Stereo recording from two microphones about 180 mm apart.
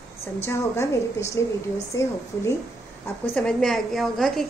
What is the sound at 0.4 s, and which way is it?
A woman's voice, 15° left (ahead or behind).